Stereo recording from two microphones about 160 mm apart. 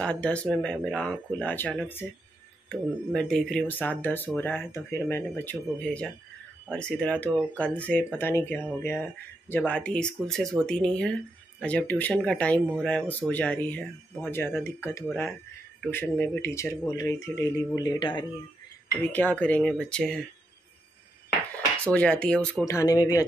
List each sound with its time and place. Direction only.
0.0 s speech: 5° left (ahead or behind)
2.7 s speech: 5° left (ahead or behind); by 18.2 s 30° left (ahead or behind)
19.1 s speech: 10° left (ahead or behind)
21.9 s speech: 5° left (ahead or behind)
22.7 s speech: 20° left (ahead or behind)